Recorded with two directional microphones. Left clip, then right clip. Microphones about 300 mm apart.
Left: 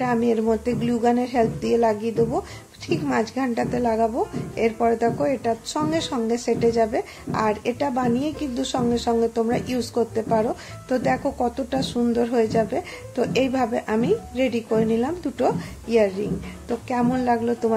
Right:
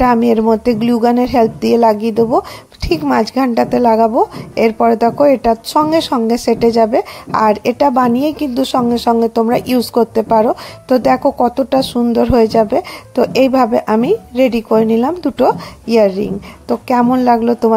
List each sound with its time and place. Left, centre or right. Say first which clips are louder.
0.0 s a woman's voice: right 10 dB; right